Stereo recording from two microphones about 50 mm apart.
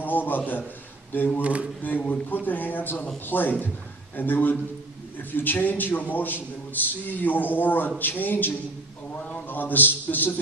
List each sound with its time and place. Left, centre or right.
0.0 s a man's voice: left
1.4 s a sound: right
1.8 s a man's voice: left